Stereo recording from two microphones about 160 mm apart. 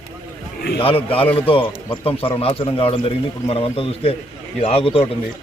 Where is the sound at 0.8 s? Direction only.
35° left (ahead or behind).